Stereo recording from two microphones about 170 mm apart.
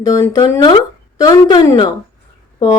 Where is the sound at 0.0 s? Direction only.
20° left (ahead or behind).